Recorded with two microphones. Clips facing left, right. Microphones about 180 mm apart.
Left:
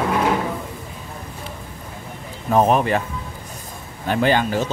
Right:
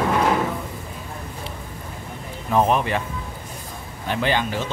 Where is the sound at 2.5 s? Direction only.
40° left (ahead or behind).